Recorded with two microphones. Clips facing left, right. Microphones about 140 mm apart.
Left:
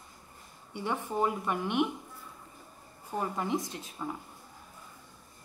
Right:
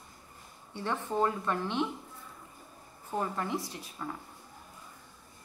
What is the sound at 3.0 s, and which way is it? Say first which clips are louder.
A woman's voice: even; 10° left (ahead or behind).